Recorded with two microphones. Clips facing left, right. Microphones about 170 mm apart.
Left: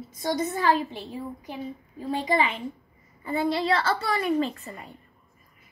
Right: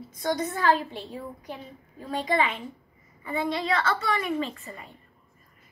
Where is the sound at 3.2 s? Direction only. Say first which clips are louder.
Left 3 dB; 35° left (ahead or behind).